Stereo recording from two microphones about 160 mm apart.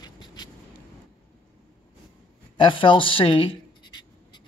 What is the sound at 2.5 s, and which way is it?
Speech, 30° left (ahead or behind).